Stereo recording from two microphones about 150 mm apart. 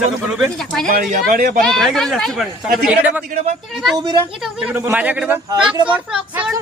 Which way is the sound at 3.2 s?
55° right (ahead or behind).